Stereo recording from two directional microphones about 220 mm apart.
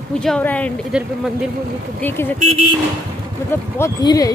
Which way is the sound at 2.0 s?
10° left (ahead or behind).